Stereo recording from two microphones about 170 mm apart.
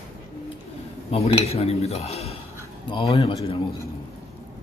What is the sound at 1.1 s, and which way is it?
Speech, 35° left (ahead or behind).